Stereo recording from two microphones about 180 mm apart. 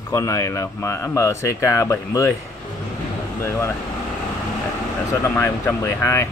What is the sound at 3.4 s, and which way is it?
Speech, 15° left (ahead or behind).